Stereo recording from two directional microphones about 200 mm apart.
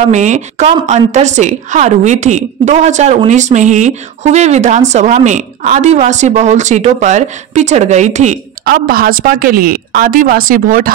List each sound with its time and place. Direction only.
0.1 s a woman's voice: 35° right (ahead or behind)